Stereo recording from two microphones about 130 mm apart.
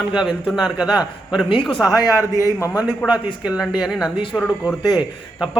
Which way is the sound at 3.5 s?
5° right (ahead or behind).